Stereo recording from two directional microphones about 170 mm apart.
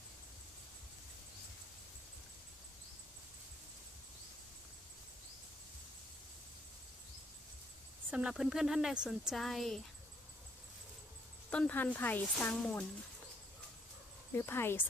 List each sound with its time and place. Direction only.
8.1 s speech: 5° right (ahead or behind)
11.5 s speech: 10° left (ahead or behind)
14.3 s speech: 15° left (ahead or behind)